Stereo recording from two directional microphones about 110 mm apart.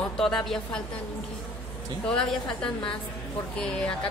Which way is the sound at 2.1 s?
10° left (ahead or behind).